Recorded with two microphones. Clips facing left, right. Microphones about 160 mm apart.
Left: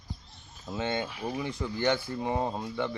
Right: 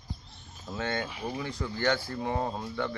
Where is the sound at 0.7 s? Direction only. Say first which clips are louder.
Left 1 dB; 20° left (ahead or behind).